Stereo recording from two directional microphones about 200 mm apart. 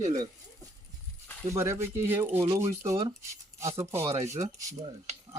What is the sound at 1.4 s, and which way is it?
Speech, 15° right (ahead or behind).